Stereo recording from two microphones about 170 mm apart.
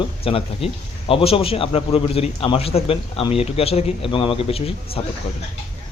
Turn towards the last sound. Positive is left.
turn(degrees=35)  # may be behind; listen again after turning